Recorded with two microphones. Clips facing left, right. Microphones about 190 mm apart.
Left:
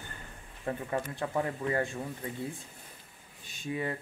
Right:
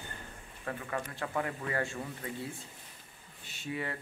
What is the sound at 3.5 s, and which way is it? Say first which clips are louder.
Speech: left 3 dB; 20° left (ahead or behind).